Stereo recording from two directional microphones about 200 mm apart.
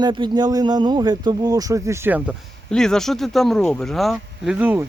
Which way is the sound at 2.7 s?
5° left (ahead or behind).